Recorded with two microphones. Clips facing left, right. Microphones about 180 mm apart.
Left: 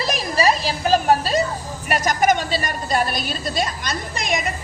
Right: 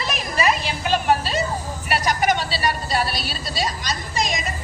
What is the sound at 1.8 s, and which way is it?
A woman's voice, 45° left (ahead or behind).